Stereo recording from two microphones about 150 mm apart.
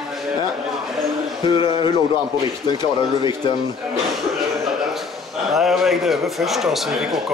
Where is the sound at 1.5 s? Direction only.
35° left (ahead or behind).